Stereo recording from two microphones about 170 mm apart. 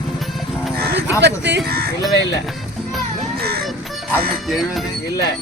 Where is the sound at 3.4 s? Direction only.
65° right (ahead or behind).